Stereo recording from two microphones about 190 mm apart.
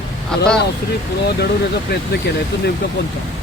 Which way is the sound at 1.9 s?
60° left (ahead or behind).